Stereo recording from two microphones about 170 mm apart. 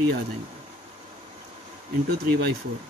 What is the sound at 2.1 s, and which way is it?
Speech, 70° right (ahead or behind).